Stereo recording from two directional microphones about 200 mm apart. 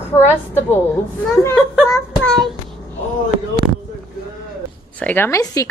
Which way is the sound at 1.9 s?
5° left (ahead or behind).